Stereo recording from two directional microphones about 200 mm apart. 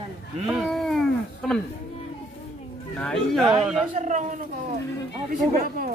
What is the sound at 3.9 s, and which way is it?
Speech, 35° right (ahead or behind).